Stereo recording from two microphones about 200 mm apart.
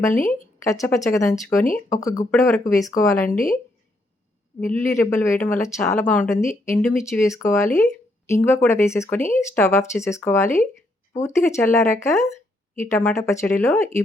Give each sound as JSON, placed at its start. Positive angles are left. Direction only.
{"t": 0.6, "sound": "speech", "side_deg": 15}
{"t": 3.2, "sound": "speech", "side_deg": 45}
{"t": 4.6, "sound": "speech", "side_deg": 10}